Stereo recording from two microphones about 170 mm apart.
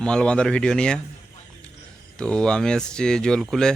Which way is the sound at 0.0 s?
5° left (ahead or behind).